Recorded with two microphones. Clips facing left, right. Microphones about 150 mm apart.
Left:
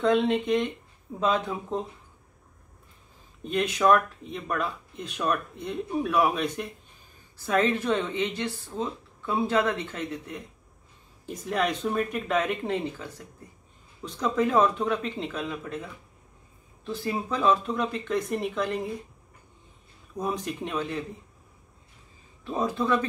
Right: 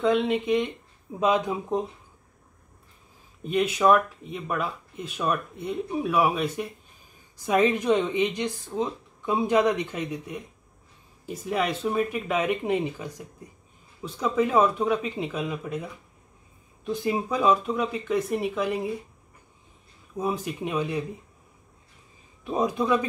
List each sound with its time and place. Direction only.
0.0 s speech: centre (ahead or behind)
1.2 s speech: 15° right (ahead or behind)
3.4 s speech: 5° right (ahead or behind)
20.2 s speech: 5° right (ahead or behind)
22.4 s speech: 15° right (ahead or behind)